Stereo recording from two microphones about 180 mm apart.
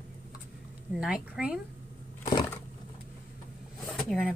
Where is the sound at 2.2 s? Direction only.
20° left (ahead or behind).